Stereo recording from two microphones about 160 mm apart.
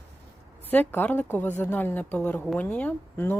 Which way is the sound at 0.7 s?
10° left (ahead or behind).